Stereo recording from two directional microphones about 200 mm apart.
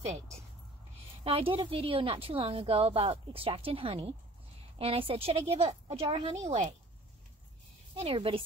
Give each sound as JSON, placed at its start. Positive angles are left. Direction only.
{"t": 1.2, "sound": "a woman's voice", "side_deg": -25}
{"t": 7.9, "sound": "a woman's voice", "side_deg": -30}